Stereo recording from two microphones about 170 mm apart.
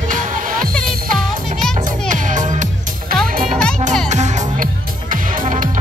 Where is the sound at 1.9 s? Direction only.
50° right (ahead or behind).